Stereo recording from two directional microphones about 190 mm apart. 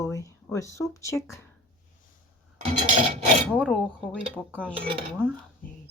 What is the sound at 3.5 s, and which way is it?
Speech, 5° right (ahead or behind).